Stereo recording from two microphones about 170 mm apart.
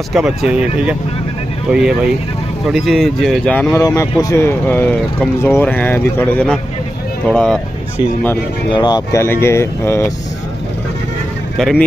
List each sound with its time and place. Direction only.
0.1 s speech: 5° right (ahead or behind)
3.7 s speech: 20° left (ahead or behind)
8.7 s speech: 25° left (ahead or behind)
11.5 s speech: centre (ahead or behind)